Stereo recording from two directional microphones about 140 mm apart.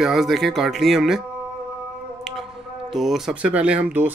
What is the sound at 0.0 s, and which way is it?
Speech, centre (ahead or behind).